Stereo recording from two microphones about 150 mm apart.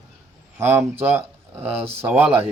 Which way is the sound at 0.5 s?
15° right (ahead or behind).